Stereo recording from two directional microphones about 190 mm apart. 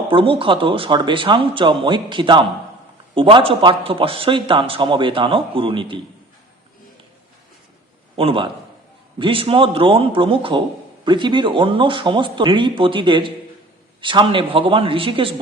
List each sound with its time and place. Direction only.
0.1 s a man's voice: 25° right (ahead or behind)
8.1 s a man's voice: 30° right (ahead or behind)